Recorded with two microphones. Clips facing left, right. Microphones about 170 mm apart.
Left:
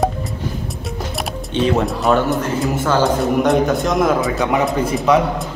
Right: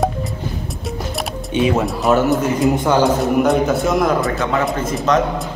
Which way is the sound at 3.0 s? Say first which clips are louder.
Right 1 dB; centre (ahead or behind).